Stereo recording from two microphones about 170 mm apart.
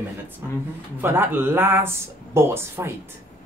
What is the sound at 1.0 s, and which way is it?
Speech, 15° right (ahead or behind).